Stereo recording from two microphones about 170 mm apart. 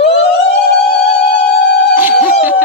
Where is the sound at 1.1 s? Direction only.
75° left (ahead or behind).